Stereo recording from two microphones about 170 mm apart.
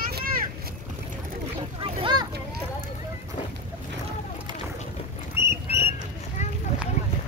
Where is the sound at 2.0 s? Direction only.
25° right (ahead or behind).